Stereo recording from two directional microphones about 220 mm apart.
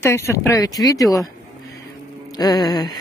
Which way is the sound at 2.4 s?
20° left (ahead or behind).